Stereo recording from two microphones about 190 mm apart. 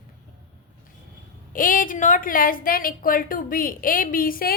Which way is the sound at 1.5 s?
45° left (ahead or behind).